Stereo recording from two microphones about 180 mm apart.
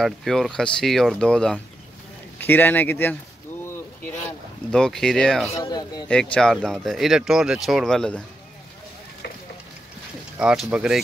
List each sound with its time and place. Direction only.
0.0 s speech: centre (ahead or behind)
4.6 s speech: 5° left (ahead or behind)
5.6 s speech: 20° left (ahead or behind)
6.3 s speech: 5° left (ahead or behind)
10.4 s speech: 5° right (ahead or behind)